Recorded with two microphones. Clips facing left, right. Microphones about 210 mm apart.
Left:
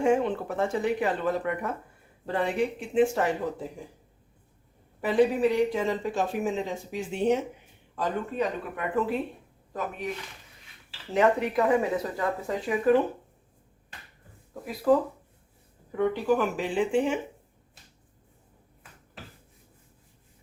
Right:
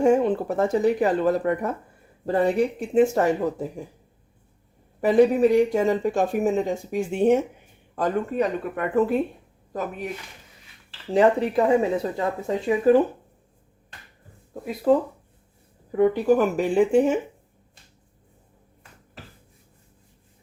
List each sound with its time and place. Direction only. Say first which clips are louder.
0.0 s speech: right 5 dB; 40° right (ahead or behind)
4.9 s speech: right 6 dB; 45° right (ahead or behind)
11.1 s speech: right 5 dB; 30° right (ahead or behind)
14.9 s speech: right 3 dB; 25° right (ahead or behind)
16.0 s speech: right 6 dB; 40° right (ahead or behind)